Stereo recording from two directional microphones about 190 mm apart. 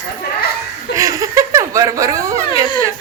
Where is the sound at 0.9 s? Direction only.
15° right (ahead or behind).